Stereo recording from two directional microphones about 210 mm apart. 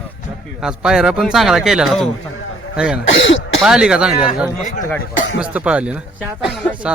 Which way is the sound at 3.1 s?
65° left (ahead or behind).